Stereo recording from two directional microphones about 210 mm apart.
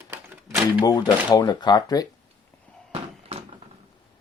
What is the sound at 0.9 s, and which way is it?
Speech, 20° left (ahead or behind).